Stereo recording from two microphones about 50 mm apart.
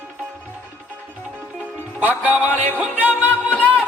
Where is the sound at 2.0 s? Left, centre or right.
Right.